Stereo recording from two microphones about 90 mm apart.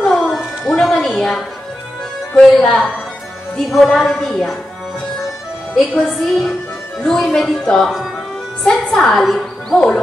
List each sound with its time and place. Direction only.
0.0 s music: 5° left (ahead or behind)
2.6 s speech: 20° left (ahead or behind)
3.5 s a woman's voice: centre (ahead or behind)
5.9 s a woman's voice: 15° left (ahead or behind)